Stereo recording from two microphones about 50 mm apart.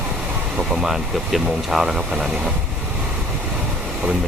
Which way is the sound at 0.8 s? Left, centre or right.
Centre.